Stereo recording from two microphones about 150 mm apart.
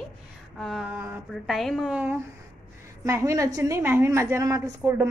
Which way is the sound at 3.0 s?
20° right (ahead or behind).